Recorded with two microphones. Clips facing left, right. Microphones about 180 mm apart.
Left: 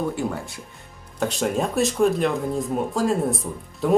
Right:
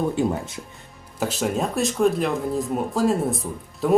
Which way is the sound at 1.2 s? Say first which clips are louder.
Left 1 dB; centre (ahead or behind).